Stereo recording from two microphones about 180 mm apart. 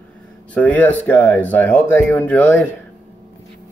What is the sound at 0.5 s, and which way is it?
Speech, 10° left (ahead or behind).